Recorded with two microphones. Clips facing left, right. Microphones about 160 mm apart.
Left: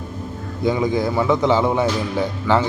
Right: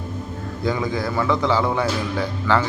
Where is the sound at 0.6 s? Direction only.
20° left (ahead or behind).